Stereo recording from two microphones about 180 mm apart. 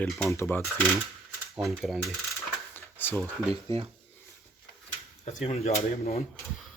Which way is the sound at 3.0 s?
10° left (ahead or behind).